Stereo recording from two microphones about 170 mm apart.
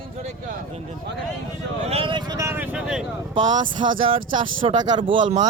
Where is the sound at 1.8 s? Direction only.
35° right (ahead or behind); by 3.1 s 5° right (ahead or behind).